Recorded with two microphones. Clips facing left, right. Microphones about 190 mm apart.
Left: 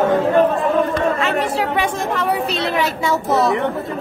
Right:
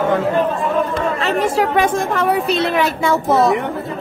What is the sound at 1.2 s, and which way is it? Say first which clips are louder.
A woman's voice: right 2 dB; 45° right (ahead or behind).